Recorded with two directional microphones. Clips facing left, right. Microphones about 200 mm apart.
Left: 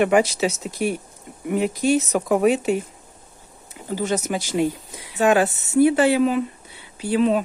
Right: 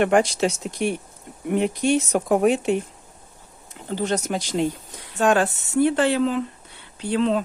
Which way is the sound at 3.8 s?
10° left (ahead or behind).